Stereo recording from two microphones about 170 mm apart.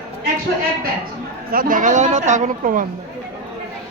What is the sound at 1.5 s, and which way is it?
A woman's voice, 55° right (ahead or behind).